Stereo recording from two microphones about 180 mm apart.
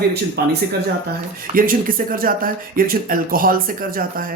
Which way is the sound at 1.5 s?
50° right (ahead or behind).